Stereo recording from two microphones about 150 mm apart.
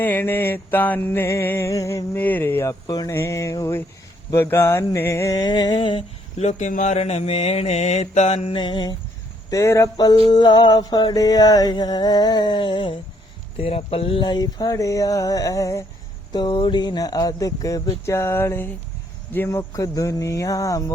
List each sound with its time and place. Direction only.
0.0 s music: 15° left (ahead or behind)
4.3 s a sound: 15° left (ahead or behind)
9.5 s music: 20° left (ahead or behind)